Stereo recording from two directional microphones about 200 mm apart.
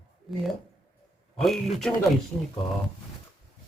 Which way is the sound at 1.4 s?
Centre (ahead or behind).